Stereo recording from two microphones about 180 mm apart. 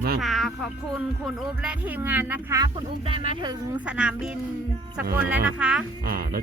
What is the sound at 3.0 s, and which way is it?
Speech, 30° right (ahead or behind).